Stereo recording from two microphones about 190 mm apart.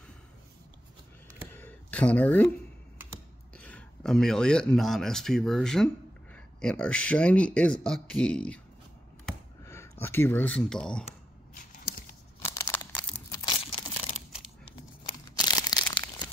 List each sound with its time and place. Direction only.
1.5 s a sound: 10° left (ahead or behind)
3.5 s speech: 5° left (ahead or behind)
9.7 s speech: 15° left (ahead or behind)
11.5 s a sound: 50° left (ahead or behind)
12.4 s crumpling: 15° left (ahead or behind)
15.3 s crushing: 20° left (ahead or behind)